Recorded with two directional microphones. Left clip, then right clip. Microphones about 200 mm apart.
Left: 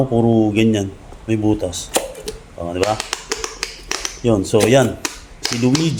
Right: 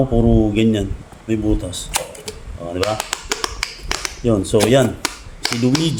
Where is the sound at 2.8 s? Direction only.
20° right (ahead or behind).